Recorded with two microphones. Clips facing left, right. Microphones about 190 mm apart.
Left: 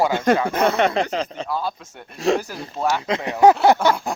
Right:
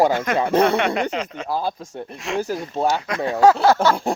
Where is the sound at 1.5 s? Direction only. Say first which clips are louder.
Right 6 dB; 30° right (ahead or behind).